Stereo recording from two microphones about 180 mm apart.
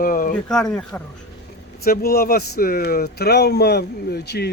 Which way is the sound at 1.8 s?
55° left (ahead or behind).